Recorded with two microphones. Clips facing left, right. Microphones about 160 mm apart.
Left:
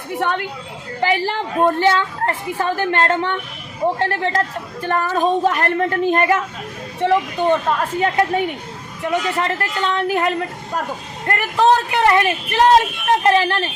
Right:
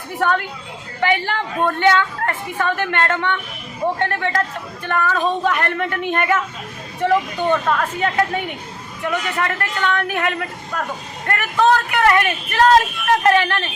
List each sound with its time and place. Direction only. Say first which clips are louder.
0.1 s a man's voice: right 1 dB; 25° left (ahead or behind)
7.5 s a man's voice: left 1 dB; 20° left (ahead or behind)